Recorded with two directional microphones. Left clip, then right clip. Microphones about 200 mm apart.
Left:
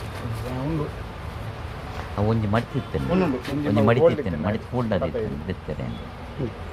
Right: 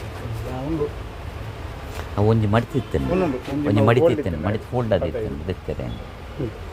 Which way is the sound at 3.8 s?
50° right (ahead or behind).